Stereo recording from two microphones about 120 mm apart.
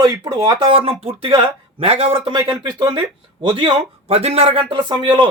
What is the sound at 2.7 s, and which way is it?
Speech, 35° right (ahead or behind).